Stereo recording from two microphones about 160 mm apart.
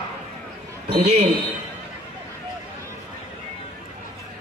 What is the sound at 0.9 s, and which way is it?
Speech, 40° right (ahead or behind).